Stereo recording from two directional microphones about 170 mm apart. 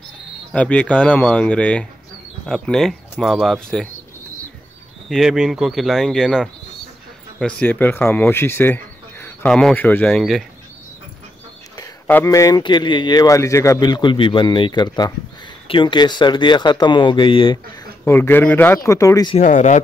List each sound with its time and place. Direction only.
0.5 s speech: 5° left (ahead or behind)
5.1 s speech: centre (ahead or behind)
12.1 s a man's voice: 15° left (ahead or behind); by 17.6 s 30° left (ahead or behind)
18.0 s speech: 15° left (ahead or behind)
19.3 s speech: 45° left (ahead or behind)